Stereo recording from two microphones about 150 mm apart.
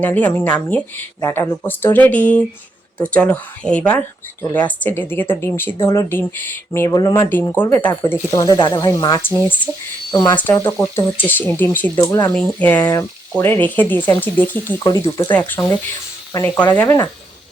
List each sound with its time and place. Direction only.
0.0 s speech: 10° left (ahead or behind)
10.3 s speech: 10° left (ahead or behind)
11.9 s speech: 25° left (ahead or behind)
12.3 s speech: 10° left (ahead or behind)
12.8 s speech: 25° left (ahead or behind)
14.8 s speech: 20° left (ahead or behind)
15.3 s speech: 10° left (ahead or behind)